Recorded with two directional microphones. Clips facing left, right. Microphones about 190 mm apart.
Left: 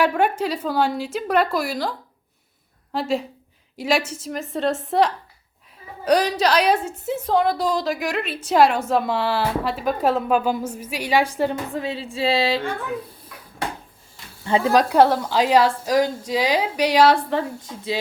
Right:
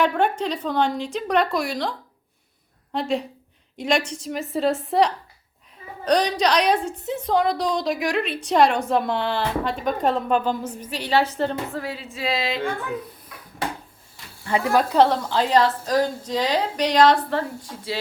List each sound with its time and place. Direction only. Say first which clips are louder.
0.0 s a woman's voice: left 1 dB; 10° left (ahead or behind); by 12.6 s 30° left (ahead or behind)
14.4 s a woman's voice: left 3 dB; 25° left (ahead or behind)